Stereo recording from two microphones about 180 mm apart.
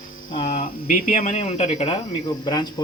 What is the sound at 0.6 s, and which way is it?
Speech, 50° left (ahead or behind).